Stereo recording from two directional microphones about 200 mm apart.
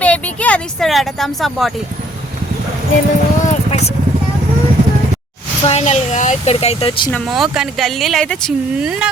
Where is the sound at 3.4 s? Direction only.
35° left (ahead or behind).